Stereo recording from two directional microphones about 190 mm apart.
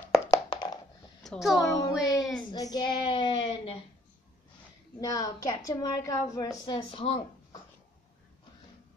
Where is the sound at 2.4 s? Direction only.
20° left (ahead or behind).